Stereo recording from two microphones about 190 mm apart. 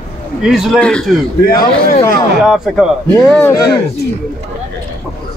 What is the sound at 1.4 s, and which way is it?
Speech, 50° left (ahead or behind).